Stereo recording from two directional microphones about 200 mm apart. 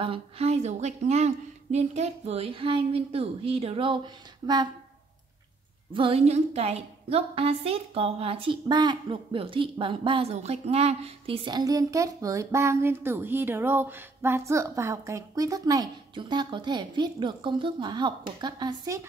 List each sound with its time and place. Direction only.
0.0 s a woman's voice: 30° right (ahead or behind)
5.9 s a woman's voice: 30° right (ahead or behind)